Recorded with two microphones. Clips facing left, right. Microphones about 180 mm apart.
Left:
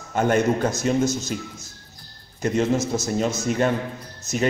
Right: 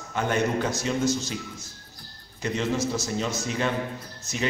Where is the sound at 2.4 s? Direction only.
45° left (ahead or behind).